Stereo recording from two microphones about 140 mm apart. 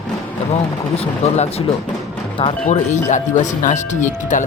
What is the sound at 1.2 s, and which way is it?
Speech, 50° left (ahead or behind).